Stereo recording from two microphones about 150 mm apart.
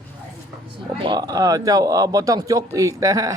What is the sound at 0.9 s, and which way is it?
Speech, 30° right (ahead or behind).